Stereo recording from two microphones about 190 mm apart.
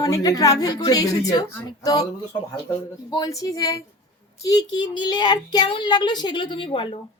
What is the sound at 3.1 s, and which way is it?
Speech, 20° left (ahead or behind).